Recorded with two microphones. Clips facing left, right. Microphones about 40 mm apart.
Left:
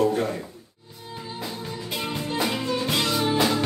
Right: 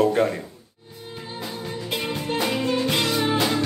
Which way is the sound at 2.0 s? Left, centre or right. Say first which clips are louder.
Even; centre.